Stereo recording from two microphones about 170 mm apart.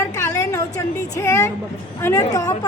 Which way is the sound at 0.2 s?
15° left (ahead or behind).